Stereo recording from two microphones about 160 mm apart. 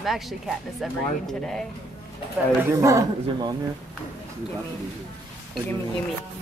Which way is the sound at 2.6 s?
20° right (ahead or behind).